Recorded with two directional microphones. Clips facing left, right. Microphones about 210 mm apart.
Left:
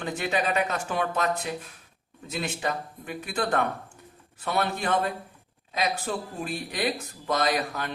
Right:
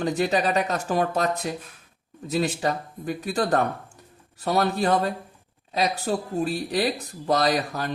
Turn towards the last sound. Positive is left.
turn(degrees=-35)  # may be behind; listen again after turning